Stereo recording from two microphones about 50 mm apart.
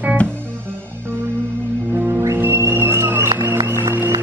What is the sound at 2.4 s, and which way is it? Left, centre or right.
Music, right.